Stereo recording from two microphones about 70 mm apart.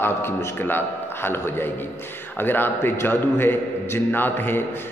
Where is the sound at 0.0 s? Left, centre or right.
Left.